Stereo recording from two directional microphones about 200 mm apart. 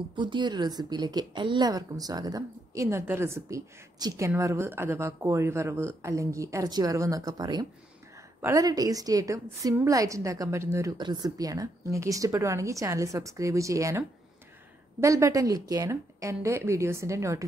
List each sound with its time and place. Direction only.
0.1 s a woman's voice: 25° right (ahead or behind)